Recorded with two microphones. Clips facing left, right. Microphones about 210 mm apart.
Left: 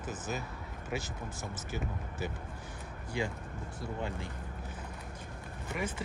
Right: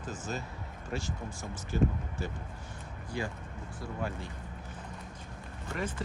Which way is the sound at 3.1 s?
15° left (ahead or behind).